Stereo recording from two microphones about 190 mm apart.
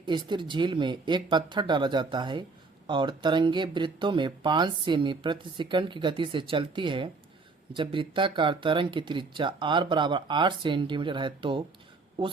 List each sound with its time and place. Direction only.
0.0 s speech: 25° right (ahead or behind)